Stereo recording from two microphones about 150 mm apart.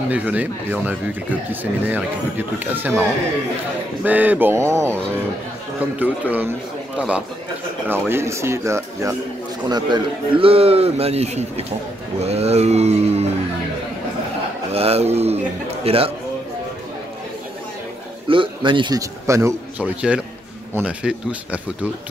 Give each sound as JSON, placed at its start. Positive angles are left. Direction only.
{"t": 0.1, "sound": "speech", "side_deg": -10}
{"t": 4.0, "sound": "speech", "side_deg": -10}
{"t": 5.9, "sound": "a man's voice", "side_deg": -10}
{"t": 14.7, "sound": "a man's voice", "side_deg": -40}
{"t": 18.3, "sound": "speech", "side_deg": -35}
{"t": 19.8, "sound": "speech", "side_deg": -5}